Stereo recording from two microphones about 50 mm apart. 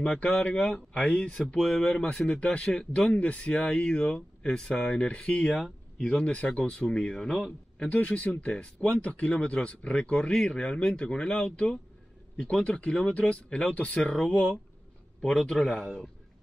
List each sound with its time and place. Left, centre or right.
0.0 s speech: left
1.6 s speech: centre
7.2 s speech: centre
7.8 s speech: left
14.1 s speech: centre
15.5 s speech: centre